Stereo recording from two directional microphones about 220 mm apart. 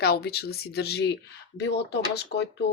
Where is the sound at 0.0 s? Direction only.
45° left (ahead or behind).